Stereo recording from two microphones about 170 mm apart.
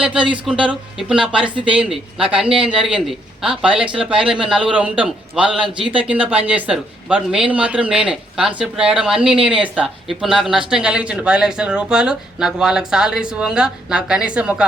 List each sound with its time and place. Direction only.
0.0 s speech: 5° right (ahead or behind)
1.5 s speech: 30° right (ahead or behind)
1.7 s speech: 5° right (ahead or behind)